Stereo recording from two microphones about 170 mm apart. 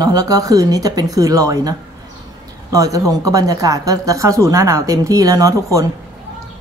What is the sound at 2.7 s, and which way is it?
Speech, 20° right (ahead or behind).